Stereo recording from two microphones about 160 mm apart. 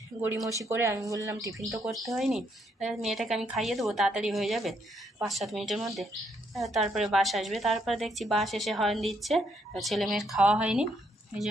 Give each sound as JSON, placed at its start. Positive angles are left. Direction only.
{"t": 0.1, "sound": "speech", "side_deg": -25}
{"t": 1.5, "sound": "a woman's voice", "side_deg": 0}